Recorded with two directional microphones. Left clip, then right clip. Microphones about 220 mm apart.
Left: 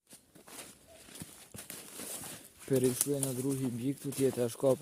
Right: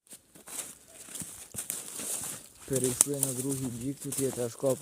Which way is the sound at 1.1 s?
55° right (ahead or behind).